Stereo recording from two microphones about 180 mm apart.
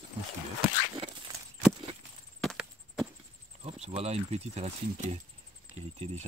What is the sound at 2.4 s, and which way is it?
Chop, centre (ahead or behind).